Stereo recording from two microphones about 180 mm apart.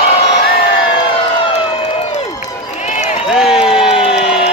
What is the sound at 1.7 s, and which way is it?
Crowd, 35° left (ahead or behind).